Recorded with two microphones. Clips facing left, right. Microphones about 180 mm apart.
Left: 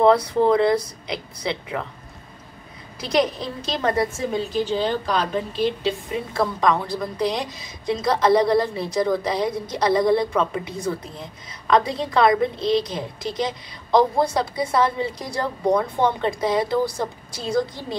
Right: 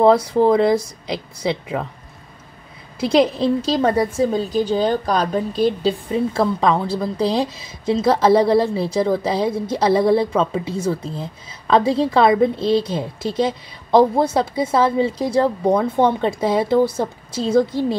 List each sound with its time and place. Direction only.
0.0 s a woman's voice: 25° right (ahead or behind)
3.0 s a woman's voice: 25° right (ahead or behind)